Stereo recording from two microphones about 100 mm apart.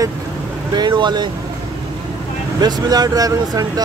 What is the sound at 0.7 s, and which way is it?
Speech, 45° right (ahead or behind).